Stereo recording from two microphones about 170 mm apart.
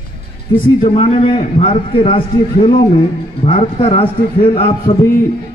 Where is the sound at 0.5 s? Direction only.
30° left (ahead or behind).